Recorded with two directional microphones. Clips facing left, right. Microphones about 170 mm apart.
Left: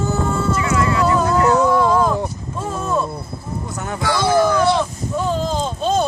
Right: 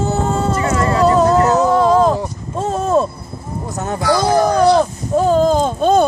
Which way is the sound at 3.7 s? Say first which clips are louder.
Right 5 dB; 40° right (ahead or behind).